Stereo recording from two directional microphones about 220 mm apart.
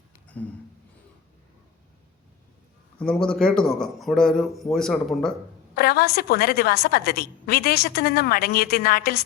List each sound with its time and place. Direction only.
0.4 s a sound: 5° left (ahead or behind)
3.0 s a man's voice: 5° left (ahead or behind)
5.7 s a woman's voice: 45° left (ahead or behind)